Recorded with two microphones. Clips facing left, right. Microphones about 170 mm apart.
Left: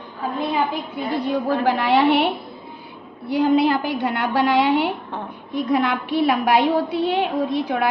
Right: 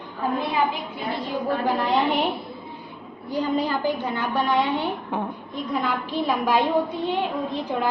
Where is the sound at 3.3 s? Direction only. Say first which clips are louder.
Left 7 dB; 85° left.